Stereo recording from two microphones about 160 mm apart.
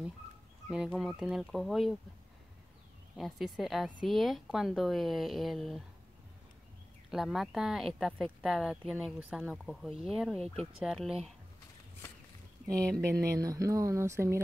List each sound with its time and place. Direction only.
0.7 s speech: 5° right (ahead or behind)
3.2 s speech: centre (ahead or behind)
7.1 s speech: centre (ahead or behind)
12.7 s speech: 5° left (ahead or behind)
13.0 s speech: 20° right (ahead or behind)